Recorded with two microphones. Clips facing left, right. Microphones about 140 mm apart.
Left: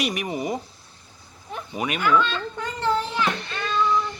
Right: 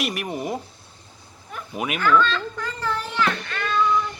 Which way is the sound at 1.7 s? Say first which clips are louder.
Even; 5° right (ahead or behind).